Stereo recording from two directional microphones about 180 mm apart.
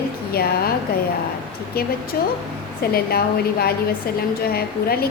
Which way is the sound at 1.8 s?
60° left (ahead or behind).